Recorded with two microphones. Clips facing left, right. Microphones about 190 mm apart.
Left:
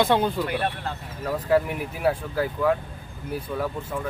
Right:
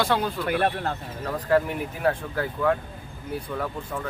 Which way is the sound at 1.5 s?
10° left (ahead or behind).